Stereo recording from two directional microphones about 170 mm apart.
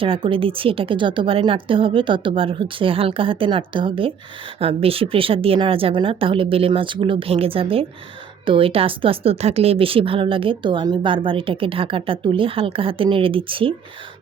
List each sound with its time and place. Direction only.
0.0 s a woman's voice: 30° right (ahead or behind)